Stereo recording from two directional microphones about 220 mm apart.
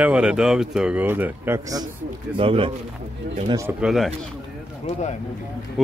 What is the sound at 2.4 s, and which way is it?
Speech, 25° right (ahead or behind).